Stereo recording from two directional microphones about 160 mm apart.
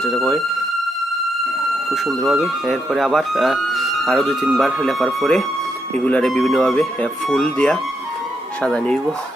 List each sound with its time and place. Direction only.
0.0 s speech: 5° left (ahead or behind)
2.0 s speech: centre (ahead or behind)